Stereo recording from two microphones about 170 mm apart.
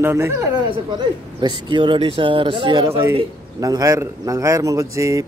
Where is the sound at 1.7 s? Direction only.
30° right (ahead or behind).